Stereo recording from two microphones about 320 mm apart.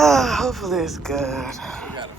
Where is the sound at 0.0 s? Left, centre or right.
Centre.